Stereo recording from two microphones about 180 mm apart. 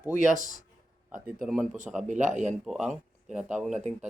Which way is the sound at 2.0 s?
45° right (ahead or behind).